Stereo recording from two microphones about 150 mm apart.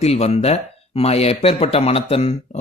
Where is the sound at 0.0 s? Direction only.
45° left (ahead or behind).